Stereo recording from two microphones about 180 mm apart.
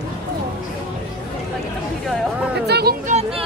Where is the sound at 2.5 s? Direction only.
65° right (ahead or behind).